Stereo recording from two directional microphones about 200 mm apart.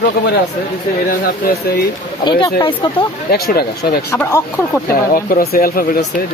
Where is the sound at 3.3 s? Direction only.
50° left (ahead or behind).